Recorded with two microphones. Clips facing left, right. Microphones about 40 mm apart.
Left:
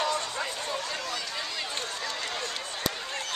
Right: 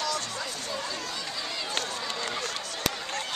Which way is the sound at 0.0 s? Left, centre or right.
Left.